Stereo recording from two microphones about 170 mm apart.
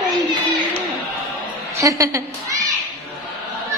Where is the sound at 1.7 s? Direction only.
20° right (ahead or behind).